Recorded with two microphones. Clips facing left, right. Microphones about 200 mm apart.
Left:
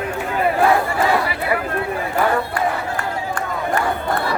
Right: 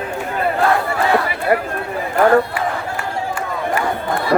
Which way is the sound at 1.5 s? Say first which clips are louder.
Right 6 dB; 60° right (ahead or behind).